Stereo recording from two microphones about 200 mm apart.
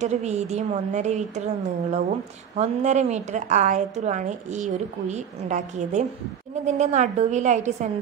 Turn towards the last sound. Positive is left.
turn(degrees=-35)  # may be behind; listen again after turning